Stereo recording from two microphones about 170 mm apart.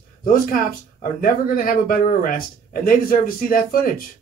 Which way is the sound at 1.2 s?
55° left (ahead or behind).